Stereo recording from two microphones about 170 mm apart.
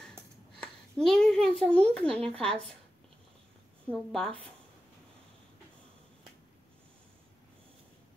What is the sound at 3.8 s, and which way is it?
Speech, 5° left (ahead or behind).